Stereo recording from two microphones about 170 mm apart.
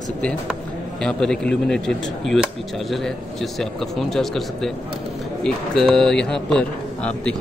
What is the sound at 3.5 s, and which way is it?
A man's voice, centre (ahead or behind).